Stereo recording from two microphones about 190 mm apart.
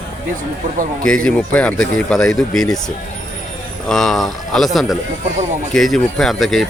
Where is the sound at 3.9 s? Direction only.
Centre (ahead or behind).